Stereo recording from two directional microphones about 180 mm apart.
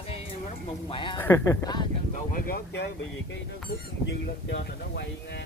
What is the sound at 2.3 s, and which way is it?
Speech, 55° left (ahead or behind).